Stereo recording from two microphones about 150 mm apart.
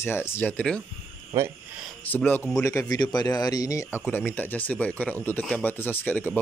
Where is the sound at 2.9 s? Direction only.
25° left (ahead or behind).